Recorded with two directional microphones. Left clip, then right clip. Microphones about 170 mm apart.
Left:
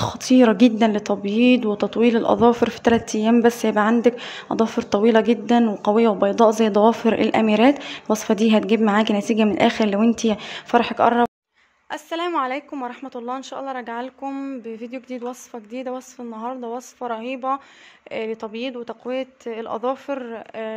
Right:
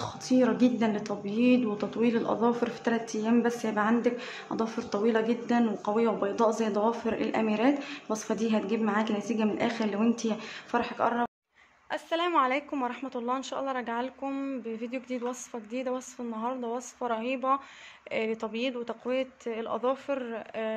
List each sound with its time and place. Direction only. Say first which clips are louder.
0.0 s speech: left 10 dB; 55° left (ahead or behind)
11.9 s a woman's voice: left 3 dB; 35° left (ahead or behind)